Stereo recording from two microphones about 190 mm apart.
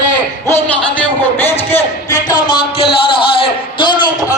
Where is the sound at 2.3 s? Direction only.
25° left (ahead or behind).